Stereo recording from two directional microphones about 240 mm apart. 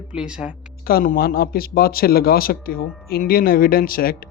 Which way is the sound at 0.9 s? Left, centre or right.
Left.